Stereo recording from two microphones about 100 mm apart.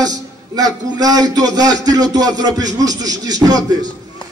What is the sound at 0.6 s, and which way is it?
Speech, 40° right (ahead or behind).